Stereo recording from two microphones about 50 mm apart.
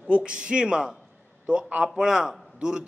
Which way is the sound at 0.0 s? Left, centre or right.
Right.